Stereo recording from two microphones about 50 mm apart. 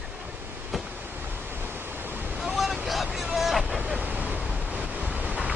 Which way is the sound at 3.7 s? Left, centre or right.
Right.